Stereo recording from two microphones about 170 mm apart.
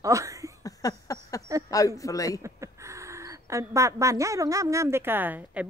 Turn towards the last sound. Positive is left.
turn(degrees=-10)  # may be behind; listen again after turning